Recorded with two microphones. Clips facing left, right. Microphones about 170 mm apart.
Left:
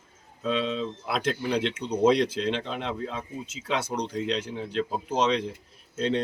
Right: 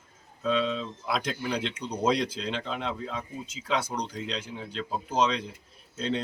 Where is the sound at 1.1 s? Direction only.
5° left (ahead or behind).